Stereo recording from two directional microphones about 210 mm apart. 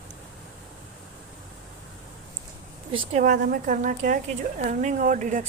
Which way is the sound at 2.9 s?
25° right (ahead or behind).